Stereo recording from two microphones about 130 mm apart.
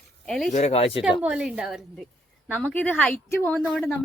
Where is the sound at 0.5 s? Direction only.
55° left (ahead or behind).